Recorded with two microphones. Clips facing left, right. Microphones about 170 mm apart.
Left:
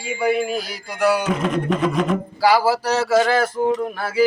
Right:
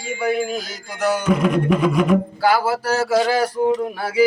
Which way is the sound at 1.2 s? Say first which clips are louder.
Right 3 dB; 5° right (ahead or behind).